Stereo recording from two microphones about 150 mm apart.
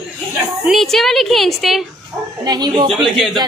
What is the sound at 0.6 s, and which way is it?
A woman's voice, centre (ahead or behind).